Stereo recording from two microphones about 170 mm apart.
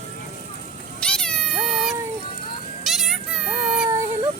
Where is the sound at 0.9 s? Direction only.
5° left (ahead or behind).